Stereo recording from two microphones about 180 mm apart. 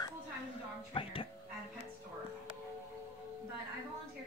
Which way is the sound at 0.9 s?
30° left (ahead or behind).